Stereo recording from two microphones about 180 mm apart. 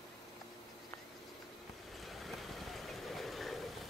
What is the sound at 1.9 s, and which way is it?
Vehicle, centre (ahead or behind).